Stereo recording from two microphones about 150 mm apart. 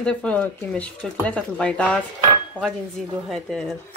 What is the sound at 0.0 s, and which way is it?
Speech, 5° left (ahead or behind).